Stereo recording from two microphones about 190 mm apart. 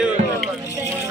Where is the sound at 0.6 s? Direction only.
15° right (ahead or behind).